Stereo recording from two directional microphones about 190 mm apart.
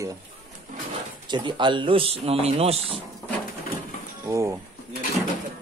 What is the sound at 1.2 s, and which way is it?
A man's voice, 25° right (ahead or behind).